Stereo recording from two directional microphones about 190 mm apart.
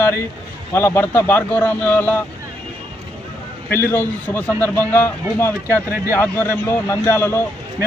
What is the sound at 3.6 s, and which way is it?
A man's voice, 10° left (ahead or behind).